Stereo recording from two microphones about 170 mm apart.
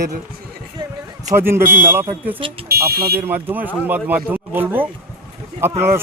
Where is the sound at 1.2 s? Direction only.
15° right (ahead or behind).